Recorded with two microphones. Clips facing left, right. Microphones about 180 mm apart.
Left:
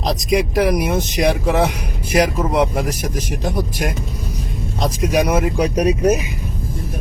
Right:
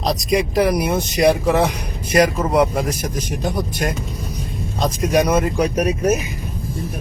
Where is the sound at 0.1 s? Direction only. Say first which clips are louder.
Left 1 dB; centre (ahead or behind).